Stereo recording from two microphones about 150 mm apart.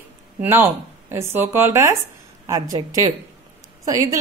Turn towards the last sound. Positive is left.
turn(degrees=-25)  # may be behind; listen again after turning